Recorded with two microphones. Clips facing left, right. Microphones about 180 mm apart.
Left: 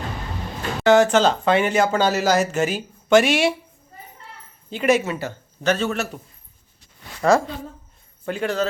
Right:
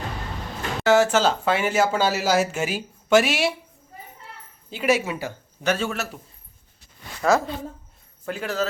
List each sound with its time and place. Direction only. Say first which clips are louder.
0.8 s speech: left 3 dB; 5° right (ahead or behind)
4.7 s speech: left 3 dB; 5° right (ahead or behind)
7.2 s a woman's voice: left 3 dB; centre (ahead or behind)